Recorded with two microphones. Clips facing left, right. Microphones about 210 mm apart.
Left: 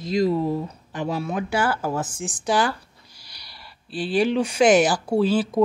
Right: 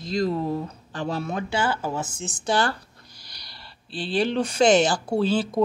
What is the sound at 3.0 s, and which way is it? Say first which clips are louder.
Snort: right 1 dB; 5° left (ahead or behind).